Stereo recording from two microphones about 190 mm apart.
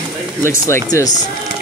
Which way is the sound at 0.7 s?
20° left (ahead or behind).